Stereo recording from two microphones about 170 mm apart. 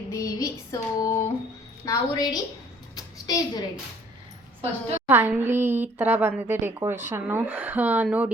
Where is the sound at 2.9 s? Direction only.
20° left (ahead or behind).